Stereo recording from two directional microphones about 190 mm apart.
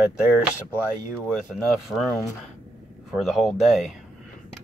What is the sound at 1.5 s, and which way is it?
Speech, centre (ahead or behind).